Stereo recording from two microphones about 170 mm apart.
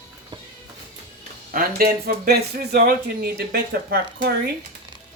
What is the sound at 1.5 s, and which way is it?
Speech, 55° right (ahead or behind).